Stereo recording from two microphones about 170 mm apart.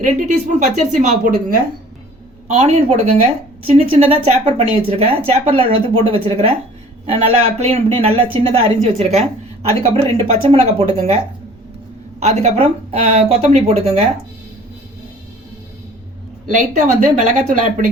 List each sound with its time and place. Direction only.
0.0 s speech: 45° right (ahead or behind)
2.5 s speech: 40° right (ahead or behind)
12.2 s speech: 40° right (ahead or behind)
16.8 s speech: 45° right (ahead or behind)